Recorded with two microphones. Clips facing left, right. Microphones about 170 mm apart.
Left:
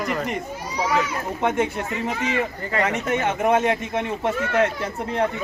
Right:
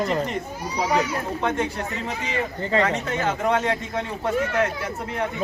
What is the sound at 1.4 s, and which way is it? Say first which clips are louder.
Speech: left 5 dB; 20° left (ahead or behind).